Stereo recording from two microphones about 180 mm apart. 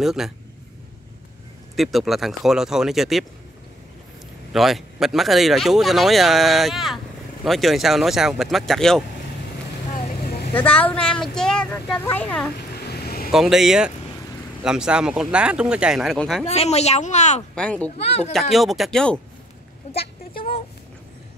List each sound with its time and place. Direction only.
0.0 s speech: centre (ahead or behind)
1.8 s speech: centre (ahead or behind)
4.5 s speech: centre (ahead or behind)
9.8 s vehicle: 40° left (ahead or behind)
10.2 s vehicle: 55° left (ahead or behind)
10.5 s speech: 10° left (ahead or behind)
12.8 s vehicle: 65° left (ahead or behind)
13.3 s speech: centre (ahead or behind)
16.4 s speech: 35° left (ahead or behind)
17.6 s speech: 5° left (ahead or behind)
17.8 s speech: 40° left (ahead or behind)
18.3 s speech: centre (ahead or behind)